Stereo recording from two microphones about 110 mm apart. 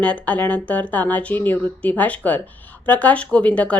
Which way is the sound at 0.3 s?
15° left (ahead or behind).